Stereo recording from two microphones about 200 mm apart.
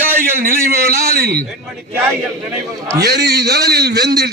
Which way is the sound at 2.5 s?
15° right (ahead or behind).